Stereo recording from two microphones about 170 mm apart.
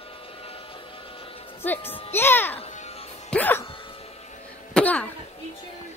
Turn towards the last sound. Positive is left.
turn(degrees=5)  # may be behind; listen again after turning